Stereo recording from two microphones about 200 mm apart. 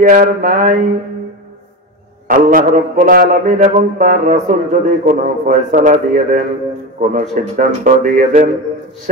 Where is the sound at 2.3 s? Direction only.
45° right (ahead or behind).